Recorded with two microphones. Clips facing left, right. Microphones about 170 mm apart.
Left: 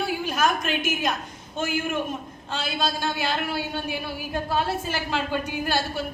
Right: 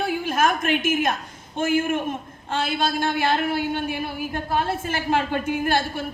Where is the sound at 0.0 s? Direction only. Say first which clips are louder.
Right 2 dB; 50° right (ahead or behind).